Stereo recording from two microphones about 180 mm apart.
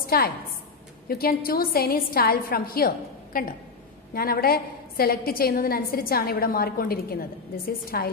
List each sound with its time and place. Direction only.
0.0 s a woman's voice: 55° left (ahead or behind)